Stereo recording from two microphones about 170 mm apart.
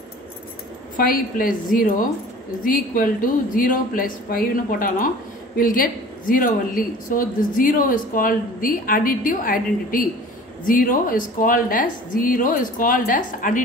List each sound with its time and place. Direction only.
0.9 s a woman's voice: 55° left (ahead or behind)